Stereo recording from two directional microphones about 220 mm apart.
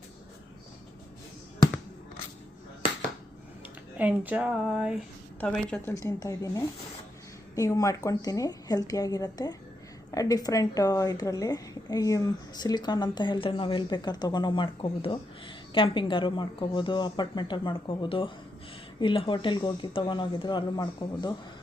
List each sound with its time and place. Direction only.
3.9 s speech: 5° right (ahead or behind)
5.9 s a woman's voice: 15° left (ahead or behind)